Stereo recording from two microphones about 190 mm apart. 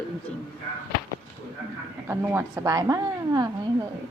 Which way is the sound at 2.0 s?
15° right (ahead or behind).